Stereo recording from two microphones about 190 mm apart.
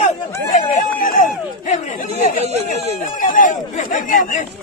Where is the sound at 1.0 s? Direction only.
45° left (ahead or behind).